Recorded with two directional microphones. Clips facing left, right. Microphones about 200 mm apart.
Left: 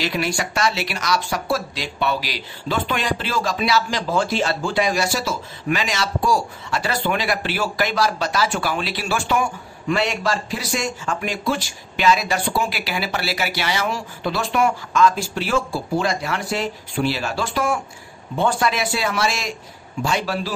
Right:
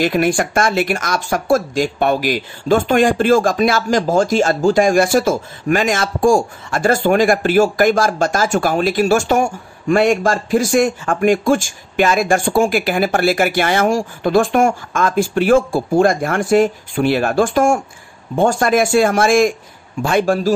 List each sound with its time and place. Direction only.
0.0 s speech: 50° right (ahead or behind)